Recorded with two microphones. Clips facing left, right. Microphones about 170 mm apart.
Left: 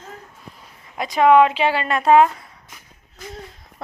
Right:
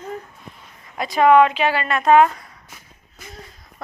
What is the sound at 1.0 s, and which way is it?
Speech, 15° left (ahead or behind).